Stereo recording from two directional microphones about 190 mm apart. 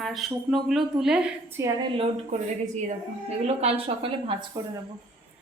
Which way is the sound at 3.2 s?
35° right (ahead or behind).